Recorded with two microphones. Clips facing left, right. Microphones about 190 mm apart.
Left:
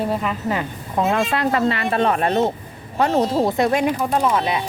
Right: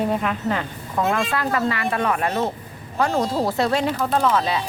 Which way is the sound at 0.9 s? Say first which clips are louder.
Left 2 dB; 25° left (ahead or behind).